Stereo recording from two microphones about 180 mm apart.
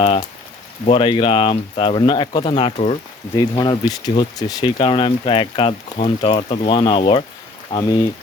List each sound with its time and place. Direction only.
0.9 s speech: 30° left (ahead or behind)